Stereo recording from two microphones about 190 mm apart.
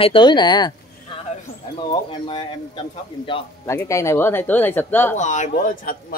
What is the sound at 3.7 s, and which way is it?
Speech, 15° left (ahead or behind).